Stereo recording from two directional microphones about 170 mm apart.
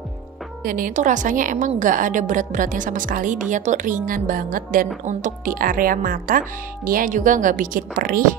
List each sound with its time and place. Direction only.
0.7 s a woman's voice: 55° right (ahead or behind)